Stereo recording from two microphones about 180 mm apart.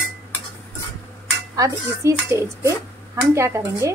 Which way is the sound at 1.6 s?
15° right (ahead or behind).